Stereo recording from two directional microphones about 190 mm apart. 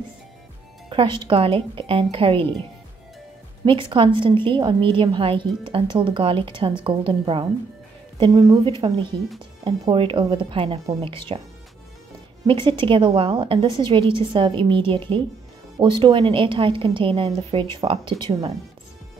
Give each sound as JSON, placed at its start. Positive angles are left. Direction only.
{"t": 0.8, "sound": "a woman's voice", "side_deg": -25}
{"t": 3.9, "sound": "a woman's voice", "side_deg": -25}
{"t": 12.4, "sound": "a woman's voice", "side_deg": -25}